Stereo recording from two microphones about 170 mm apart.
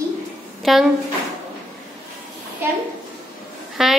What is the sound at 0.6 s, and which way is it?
Speech, centre (ahead or behind).